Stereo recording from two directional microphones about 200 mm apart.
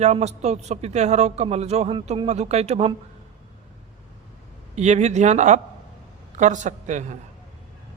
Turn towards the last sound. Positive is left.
turn(degrees=-35)  # may be behind; listen again after turning